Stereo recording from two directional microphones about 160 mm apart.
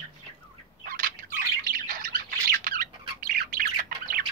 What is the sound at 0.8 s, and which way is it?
Bird, 60° right (ahead or behind).